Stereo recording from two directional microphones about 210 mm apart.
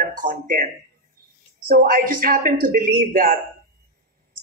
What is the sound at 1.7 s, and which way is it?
Speech, 40° right (ahead or behind).